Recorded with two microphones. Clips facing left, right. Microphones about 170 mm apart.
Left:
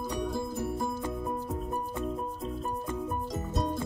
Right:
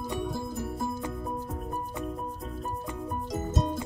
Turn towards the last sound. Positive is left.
turn(degrees=0)  # may be behind; listen again after turning